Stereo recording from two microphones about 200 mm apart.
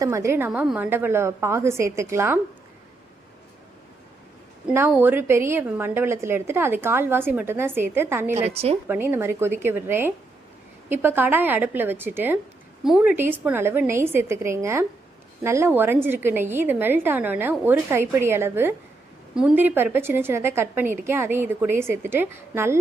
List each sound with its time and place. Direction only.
0.0 s a woman's voice: 15° right (ahead or behind)
4.7 s a woman's voice: 10° right (ahead or behind)
8.4 s a woman's voice: 30° right (ahead or behind)
8.9 s a woman's voice: 10° right (ahead or behind)